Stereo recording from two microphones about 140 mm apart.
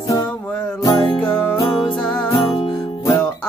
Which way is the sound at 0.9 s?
5° left (ahead or behind).